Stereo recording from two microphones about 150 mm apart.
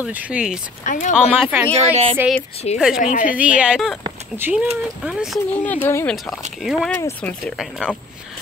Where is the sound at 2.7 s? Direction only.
45° left (ahead or behind).